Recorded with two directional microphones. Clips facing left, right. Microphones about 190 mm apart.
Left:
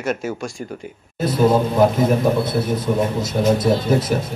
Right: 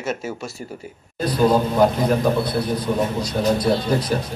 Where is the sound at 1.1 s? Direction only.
25° left (ahead or behind).